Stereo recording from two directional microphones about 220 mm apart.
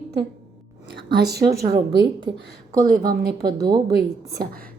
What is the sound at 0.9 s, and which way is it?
Speech, 50° right (ahead or behind).